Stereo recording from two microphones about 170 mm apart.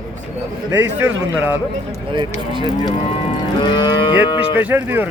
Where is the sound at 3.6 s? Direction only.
25° left (ahead or behind).